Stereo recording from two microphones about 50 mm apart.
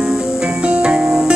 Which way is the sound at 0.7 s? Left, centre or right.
Right.